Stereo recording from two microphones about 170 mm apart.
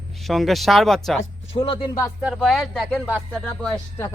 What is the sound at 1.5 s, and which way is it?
Speech, 30° left (ahead or behind).